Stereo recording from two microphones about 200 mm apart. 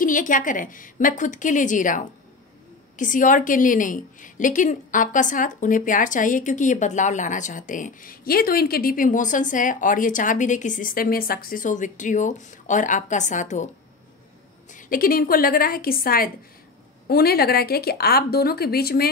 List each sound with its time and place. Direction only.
0.0 s a woman's voice: 40° left (ahead or behind)
14.7 s speech: 45° left (ahead or behind)